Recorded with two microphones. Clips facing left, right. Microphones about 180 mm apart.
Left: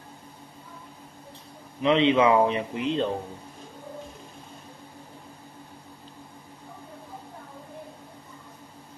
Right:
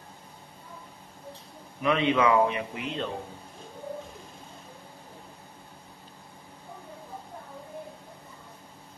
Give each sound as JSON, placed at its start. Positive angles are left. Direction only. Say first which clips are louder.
{"t": 1.8, "sound": "a man's voice", "louder": "left 4 dB", "side_deg": 25}